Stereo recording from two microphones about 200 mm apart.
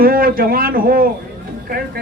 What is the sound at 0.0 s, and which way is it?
A man's voice, 45° right (ahead or behind).